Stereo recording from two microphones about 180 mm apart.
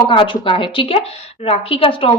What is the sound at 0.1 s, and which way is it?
A woman's voice, 30° left (ahead or behind).